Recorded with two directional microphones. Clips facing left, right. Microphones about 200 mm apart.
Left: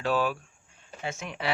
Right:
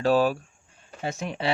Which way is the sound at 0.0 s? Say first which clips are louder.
Right 6 dB; 35° right (ahead or behind).